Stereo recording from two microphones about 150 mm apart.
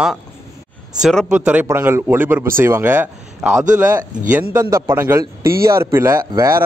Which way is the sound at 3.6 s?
60° right (ahead or behind).